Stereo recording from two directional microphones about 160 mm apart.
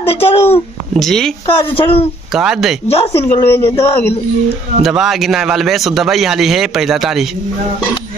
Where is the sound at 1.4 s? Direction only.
30° left (ahead or behind).